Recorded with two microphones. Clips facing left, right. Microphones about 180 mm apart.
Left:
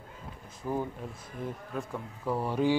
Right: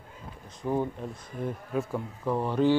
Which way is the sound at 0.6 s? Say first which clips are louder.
Right 4 dB; 10° right (ahead or behind).